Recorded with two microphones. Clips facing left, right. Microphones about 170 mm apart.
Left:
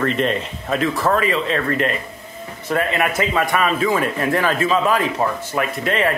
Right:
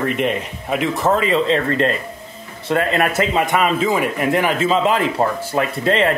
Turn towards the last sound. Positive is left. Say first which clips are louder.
# right 3 dB
turn(degrees=-30)  # may be behind; listen again after turning